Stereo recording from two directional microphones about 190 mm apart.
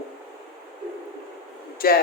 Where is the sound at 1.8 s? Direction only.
50° left (ahead or behind).